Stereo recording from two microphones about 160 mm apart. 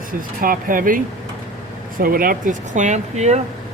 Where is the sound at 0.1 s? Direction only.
60° right (ahead or behind).